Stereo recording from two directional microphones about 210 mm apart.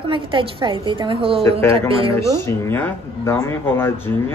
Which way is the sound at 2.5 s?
10° left (ahead or behind).